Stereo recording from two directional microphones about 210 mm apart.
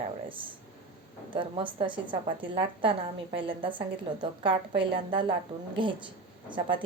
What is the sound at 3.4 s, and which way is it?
A woman's voice, 25° right (ahead or behind).